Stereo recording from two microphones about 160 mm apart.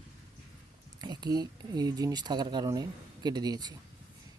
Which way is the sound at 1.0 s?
25° right (ahead or behind).